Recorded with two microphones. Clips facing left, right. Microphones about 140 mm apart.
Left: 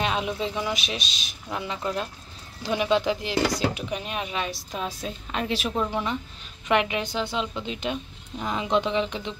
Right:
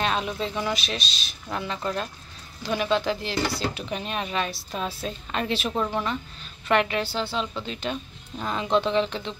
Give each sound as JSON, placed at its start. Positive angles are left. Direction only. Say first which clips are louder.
{"t": 0.0, "sound": "speech", "louder": "even", "side_deg": 10}